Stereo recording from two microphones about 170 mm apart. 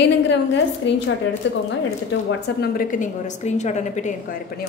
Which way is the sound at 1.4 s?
90° left.